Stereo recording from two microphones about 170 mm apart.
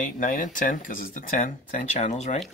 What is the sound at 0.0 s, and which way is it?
Speech, 50° left (ahead or behind).